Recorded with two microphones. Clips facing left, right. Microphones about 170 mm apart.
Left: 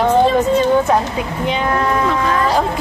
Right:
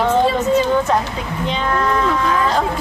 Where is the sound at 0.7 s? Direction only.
10° left (ahead or behind).